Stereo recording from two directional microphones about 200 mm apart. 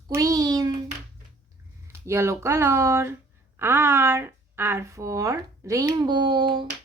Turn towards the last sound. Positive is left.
turn(degrees=-25)  # may be behind; listen again after turning